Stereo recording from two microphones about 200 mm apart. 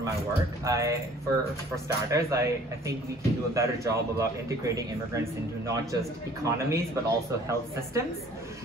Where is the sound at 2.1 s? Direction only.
15° right (ahead or behind).